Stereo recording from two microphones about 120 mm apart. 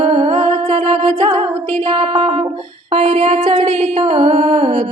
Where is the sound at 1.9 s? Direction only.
45° right (ahead or behind).